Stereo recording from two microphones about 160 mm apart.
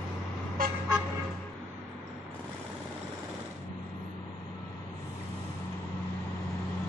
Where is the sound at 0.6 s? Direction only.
60° right (ahead or behind).